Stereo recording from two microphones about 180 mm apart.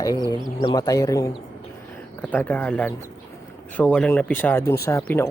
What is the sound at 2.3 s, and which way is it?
Speech, 10° left (ahead or behind).